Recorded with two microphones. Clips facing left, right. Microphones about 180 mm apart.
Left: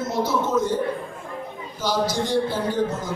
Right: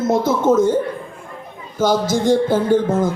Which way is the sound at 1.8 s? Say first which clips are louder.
Right 7 dB; 50° right (ahead or behind).